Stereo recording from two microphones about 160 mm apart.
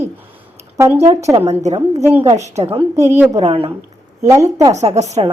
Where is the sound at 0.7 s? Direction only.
15° right (ahead or behind).